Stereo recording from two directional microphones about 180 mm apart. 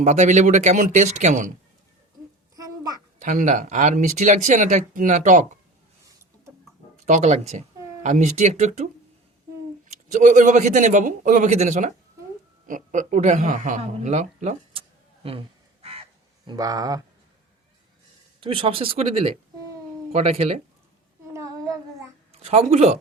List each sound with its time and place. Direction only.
0.0 s speech: 40° right (ahead or behind)
2.6 s a sound: 20° right (ahead or behind)
3.2 s speech: 45° right (ahead or behind)
7.0 s speech: 40° right (ahead or behind)
10.1 s speech: 45° right (ahead or behind)
16.5 s speech: 20° right (ahead or behind)
18.3 s speech: 30° right (ahead or behind)
21.3 s child singing: 15° right (ahead or behind)
22.3 s speech: 35° right (ahead or behind)